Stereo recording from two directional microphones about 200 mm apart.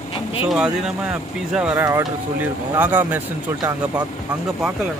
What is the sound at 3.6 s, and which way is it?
Speech, 20° right (ahead or behind).